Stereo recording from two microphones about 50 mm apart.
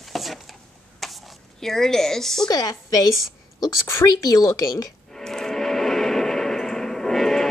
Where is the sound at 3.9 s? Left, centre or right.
Left.